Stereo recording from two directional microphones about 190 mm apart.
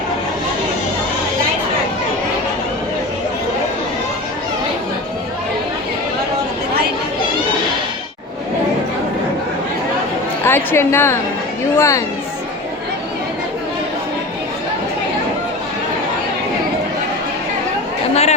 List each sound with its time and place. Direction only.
10.4 s a woman's voice: 10° left (ahead or behind)
18.1 s chatter: 35° left (ahead or behind)